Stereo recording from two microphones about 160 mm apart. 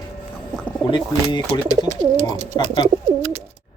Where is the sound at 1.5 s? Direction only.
25° left (ahead or behind).